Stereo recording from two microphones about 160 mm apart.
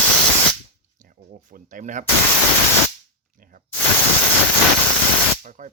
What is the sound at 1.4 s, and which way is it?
Speech, 55° right (ahead or behind).